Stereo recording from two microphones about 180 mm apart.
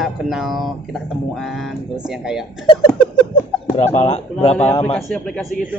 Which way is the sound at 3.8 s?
35° left (ahead or behind).